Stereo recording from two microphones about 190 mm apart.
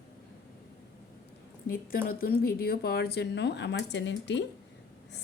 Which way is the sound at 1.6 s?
50° left (ahead or behind).